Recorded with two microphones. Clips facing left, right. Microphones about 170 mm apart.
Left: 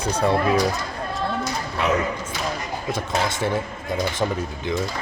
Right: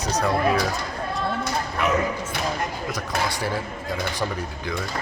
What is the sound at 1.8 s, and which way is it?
Speech, 30° left (ahead or behind).